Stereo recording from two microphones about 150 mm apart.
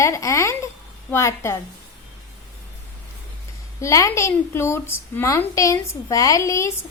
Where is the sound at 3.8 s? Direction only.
20° left (ahead or behind).